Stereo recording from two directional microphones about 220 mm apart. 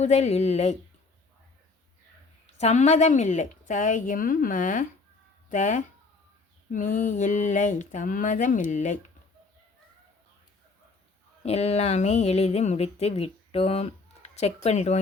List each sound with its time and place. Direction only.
0.0 s speech: 30° left (ahead or behind)
2.6 s a woman's voice: 30° left (ahead or behind)
11.4 s speech: 30° left (ahead or behind)